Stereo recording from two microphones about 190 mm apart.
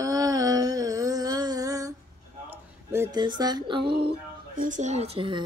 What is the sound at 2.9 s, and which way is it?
A woman's voice, 20° right (ahead or behind).